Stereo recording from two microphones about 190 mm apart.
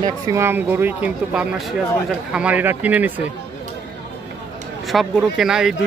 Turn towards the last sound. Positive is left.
turn(degrees=0)  # may be behind; listen again after turning